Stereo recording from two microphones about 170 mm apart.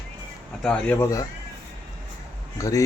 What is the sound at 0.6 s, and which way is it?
Speech, 5° left (ahead or behind).